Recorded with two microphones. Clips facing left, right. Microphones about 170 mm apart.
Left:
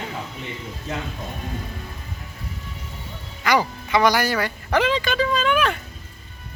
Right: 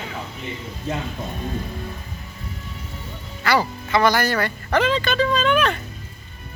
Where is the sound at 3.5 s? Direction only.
15° left (ahead or behind).